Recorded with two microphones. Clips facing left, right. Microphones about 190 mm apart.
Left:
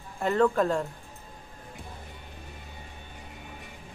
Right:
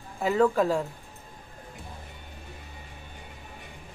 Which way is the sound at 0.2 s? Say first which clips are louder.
Right 1 dB; 5° right (ahead or behind).